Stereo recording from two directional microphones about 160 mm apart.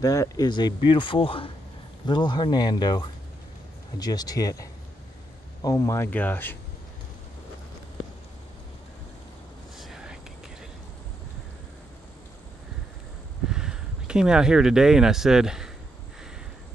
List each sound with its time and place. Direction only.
0.0 s speech: 20° left (ahead or behind)
9.8 s whispering: centre (ahead or behind)
13.5 s speech: 5° right (ahead or behind)